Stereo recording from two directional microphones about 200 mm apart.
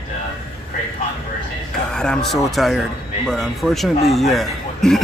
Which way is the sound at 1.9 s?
5° left (ahead or behind).